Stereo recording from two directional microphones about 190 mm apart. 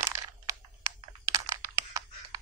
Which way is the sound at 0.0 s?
15° right (ahead or behind).